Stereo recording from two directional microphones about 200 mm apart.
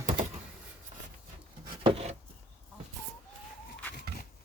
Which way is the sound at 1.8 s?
30° right (ahead or behind).